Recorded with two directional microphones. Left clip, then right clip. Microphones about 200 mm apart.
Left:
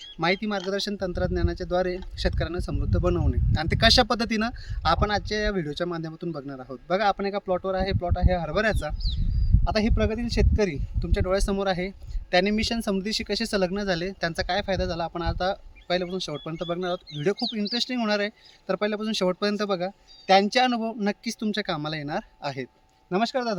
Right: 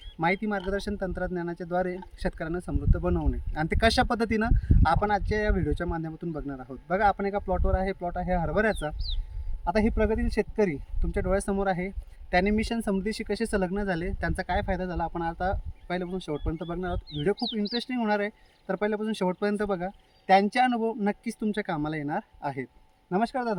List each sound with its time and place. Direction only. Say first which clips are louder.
0.2 s speech: left 2 dB; 15° left (ahead or behind)